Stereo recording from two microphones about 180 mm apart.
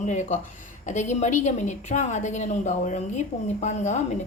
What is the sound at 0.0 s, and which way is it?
A woman's voice, 40° left (ahead or behind).